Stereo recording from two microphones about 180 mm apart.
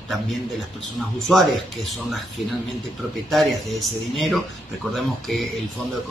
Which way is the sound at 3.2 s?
Centre (ahead or behind).